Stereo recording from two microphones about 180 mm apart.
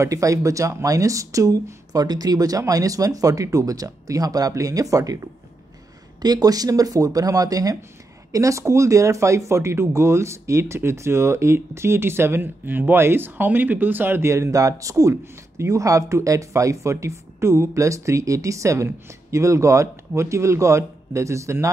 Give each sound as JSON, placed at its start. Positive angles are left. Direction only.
{"t": 0.0, "sound": "speech", "side_deg": -20}